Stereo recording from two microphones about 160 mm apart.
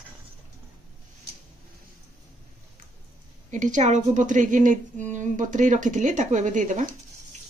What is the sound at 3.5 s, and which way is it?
Speech, 50° right (ahead or behind).